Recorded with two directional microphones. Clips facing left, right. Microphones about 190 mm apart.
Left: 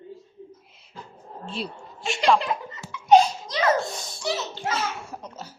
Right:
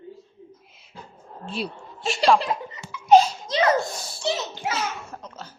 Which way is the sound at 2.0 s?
35° right (ahead or behind).